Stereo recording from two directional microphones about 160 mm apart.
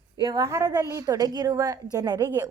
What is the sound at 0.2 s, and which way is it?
A woman's voice, 25° right (ahead or behind).